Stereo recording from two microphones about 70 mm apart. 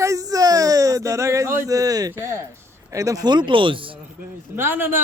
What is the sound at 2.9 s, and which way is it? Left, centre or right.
Speech, right.